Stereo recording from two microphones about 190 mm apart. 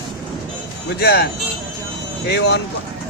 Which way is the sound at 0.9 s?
55° left (ahead or behind).